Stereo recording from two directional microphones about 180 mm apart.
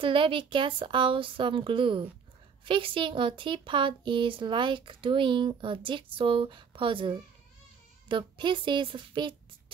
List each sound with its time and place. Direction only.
0.0 s speech: 30° right (ahead or behind)